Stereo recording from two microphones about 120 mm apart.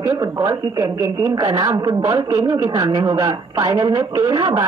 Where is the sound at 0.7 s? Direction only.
30° right (ahead or behind).